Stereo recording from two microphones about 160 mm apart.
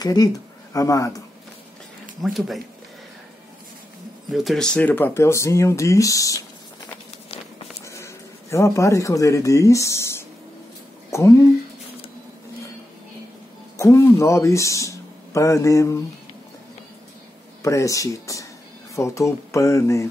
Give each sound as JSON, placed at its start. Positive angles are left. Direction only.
{"t": 0.0, "sound": "speech", "side_deg": 25}
{"t": 2.2, "sound": "speech", "side_deg": 0}
{"t": 4.3, "sound": "speech", "side_deg": 0}
{"t": 7.8, "sound": "speech", "side_deg": 20}
{"t": 13.7, "sound": "speech", "side_deg": 20}
{"t": 17.6, "sound": "speech", "side_deg": 20}